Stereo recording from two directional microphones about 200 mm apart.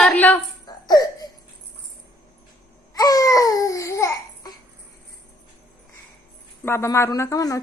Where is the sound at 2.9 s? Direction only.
20° left (ahead or behind).